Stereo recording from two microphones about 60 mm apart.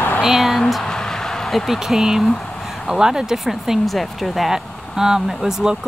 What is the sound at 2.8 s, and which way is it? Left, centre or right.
Speech, centre.